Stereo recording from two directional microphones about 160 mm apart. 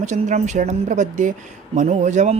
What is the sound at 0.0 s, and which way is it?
Speech, 50° right (ahead or behind).